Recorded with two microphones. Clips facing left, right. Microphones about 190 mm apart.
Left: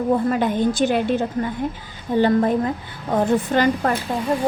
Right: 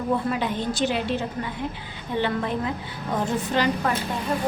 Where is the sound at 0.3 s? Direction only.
50° left (ahead or behind).